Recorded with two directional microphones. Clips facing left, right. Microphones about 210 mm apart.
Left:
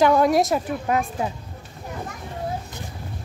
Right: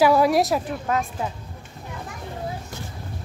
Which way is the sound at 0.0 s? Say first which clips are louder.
Even; 5° right (ahead or behind).